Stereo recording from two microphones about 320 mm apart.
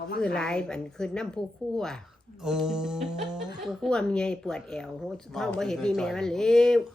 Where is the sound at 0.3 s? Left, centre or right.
Centre.